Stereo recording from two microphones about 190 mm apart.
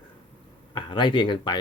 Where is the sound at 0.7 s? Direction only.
25° left (ahead or behind).